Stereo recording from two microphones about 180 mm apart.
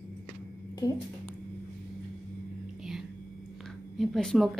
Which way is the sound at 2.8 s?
Centre (ahead or behind).